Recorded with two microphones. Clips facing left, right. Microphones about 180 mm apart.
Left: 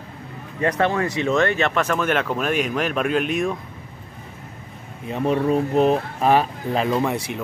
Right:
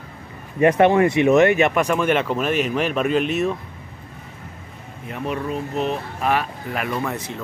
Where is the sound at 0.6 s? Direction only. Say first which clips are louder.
Right 6 dB; 20° right (ahead or behind); by 3.5 s centre (ahead or behind).